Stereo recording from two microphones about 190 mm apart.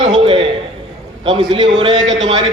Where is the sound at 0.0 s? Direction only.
25° right (ahead or behind).